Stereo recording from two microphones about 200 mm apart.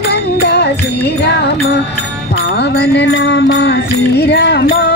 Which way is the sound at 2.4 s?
55° left (ahead or behind).